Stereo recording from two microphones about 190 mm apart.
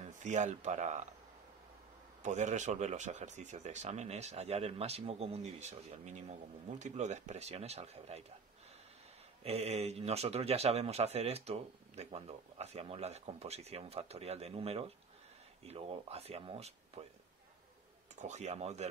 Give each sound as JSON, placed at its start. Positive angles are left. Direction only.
{"t": 0.0, "sound": "speech", "side_deg": -40}
{"t": 2.2, "sound": "speech", "side_deg": -40}
{"t": 9.4, "sound": "speech", "side_deg": -30}
{"t": 18.2, "sound": "speech", "side_deg": -35}